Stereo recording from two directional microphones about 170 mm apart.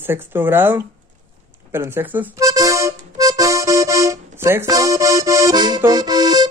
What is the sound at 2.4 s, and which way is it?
Accordion, 20° right (ahead or behind).